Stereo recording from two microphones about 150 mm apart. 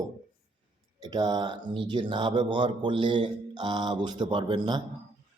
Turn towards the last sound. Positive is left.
turn(degrees=-30)  # may be behind; listen again after turning